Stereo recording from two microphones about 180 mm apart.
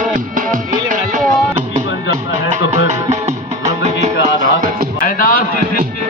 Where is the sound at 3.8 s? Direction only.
35° right (ahead or behind).